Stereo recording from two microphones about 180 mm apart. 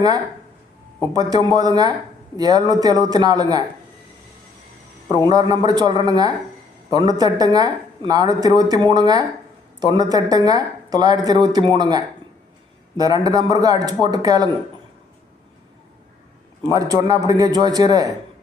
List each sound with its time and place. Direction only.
1.1 s speech: 20° right (ahead or behind)
5.3 s speech: 20° right (ahead or behind)
16.6 s speech: 20° right (ahead or behind)